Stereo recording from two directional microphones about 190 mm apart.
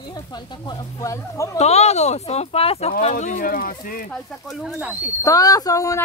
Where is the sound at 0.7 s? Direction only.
15° left (ahead or behind).